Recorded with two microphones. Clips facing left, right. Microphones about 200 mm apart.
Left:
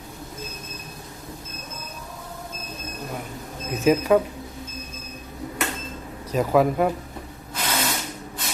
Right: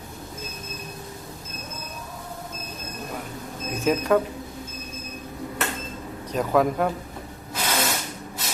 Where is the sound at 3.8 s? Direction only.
5° left (ahead or behind).